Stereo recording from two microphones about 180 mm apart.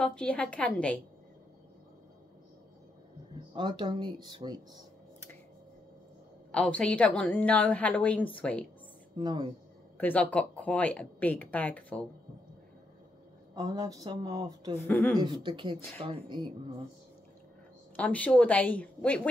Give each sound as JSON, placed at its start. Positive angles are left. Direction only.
{"t": 0.0, "sound": "a woman's voice", "side_deg": 5}
{"t": 3.5, "sound": "speech", "side_deg": -25}
{"t": 6.5, "sound": "a woman's voice", "side_deg": 5}
{"t": 9.1, "sound": "speech", "side_deg": -25}
{"t": 9.9, "sound": "a woman's voice", "side_deg": 10}
{"t": 13.6, "sound": "speech", "side_deg": -20}
{"t": 14.9, "sound": "a woman's voice", "side_deg": 5}
{"t": 15.1, "sound": "speech", "side_deg": -25}
{"t": 17.9, "sound": "a woman's voice", "side_deg": 10}